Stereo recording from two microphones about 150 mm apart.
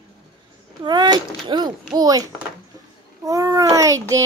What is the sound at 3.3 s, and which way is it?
Speech, 20° right (ahead or behind).